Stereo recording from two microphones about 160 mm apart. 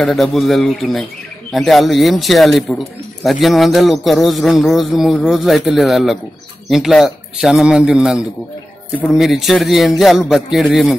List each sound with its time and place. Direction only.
0.0 s a man's voice: centre (ahead or behind)